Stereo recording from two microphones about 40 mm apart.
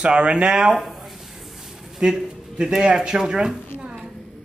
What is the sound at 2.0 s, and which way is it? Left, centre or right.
A man's voice, right.